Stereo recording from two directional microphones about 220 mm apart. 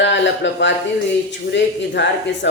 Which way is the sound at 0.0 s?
55° left (ahead or behind).